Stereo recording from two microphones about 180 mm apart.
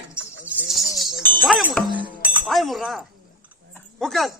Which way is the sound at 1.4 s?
5° right (ahead or behind).